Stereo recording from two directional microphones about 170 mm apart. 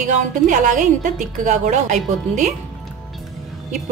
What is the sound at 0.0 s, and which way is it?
Speech, 50° right (ahead or behind).